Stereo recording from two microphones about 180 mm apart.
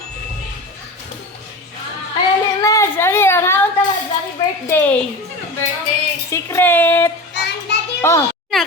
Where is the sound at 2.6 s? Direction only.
15° left (ahead or behind).